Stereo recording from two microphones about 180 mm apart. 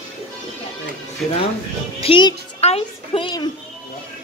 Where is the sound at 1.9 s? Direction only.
30° left (ahead or behind).